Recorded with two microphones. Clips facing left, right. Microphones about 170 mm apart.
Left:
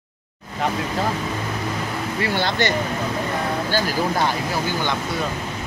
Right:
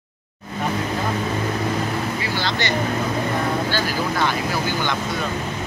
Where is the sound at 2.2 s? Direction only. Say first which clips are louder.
Left 3 dB; 55° left (ahead or behind).